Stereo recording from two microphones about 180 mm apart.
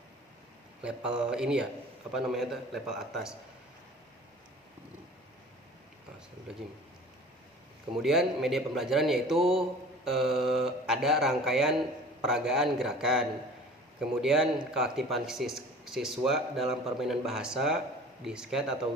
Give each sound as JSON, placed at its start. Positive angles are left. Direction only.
{"t": 0.8, "sound": "speech", "side_deg": -5}
{"t": 8.0, "sound": "speech", "side_deg": 0}
{"t": 9.4, "sound": "speech", "side_deg": -30}
{"t": 10.0, "sound": "speech", "side_deg": 0}